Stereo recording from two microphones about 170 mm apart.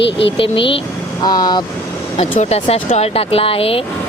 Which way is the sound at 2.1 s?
40° left (ahead or behind).